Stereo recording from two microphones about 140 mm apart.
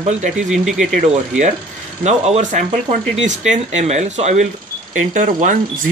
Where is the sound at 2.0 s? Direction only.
55° right (ahead or behind).